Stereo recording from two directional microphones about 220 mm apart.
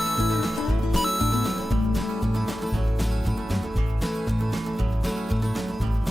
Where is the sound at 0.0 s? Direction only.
Centre (ahead or behind).